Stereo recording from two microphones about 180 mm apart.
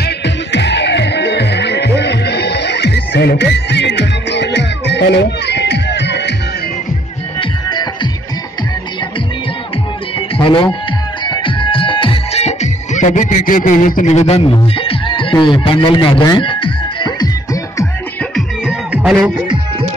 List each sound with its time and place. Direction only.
0.0 s music: 70° left (ahead or behind)
7.3 s music: 25° left (ahead or behind)
10.3 s speech: 30° left (ahead or behind)
11.2 s music: 25° left (ahead or behind)
18.3 s music: 5° right (ahead or behind)